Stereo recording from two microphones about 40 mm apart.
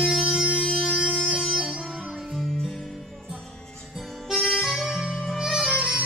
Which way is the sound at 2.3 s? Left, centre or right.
Centre.